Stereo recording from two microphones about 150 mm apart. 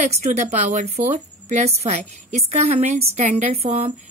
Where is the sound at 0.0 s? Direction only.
50° right (ahead or behind).